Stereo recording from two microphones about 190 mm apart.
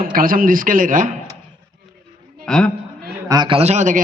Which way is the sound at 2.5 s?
5° left (ahead or behind).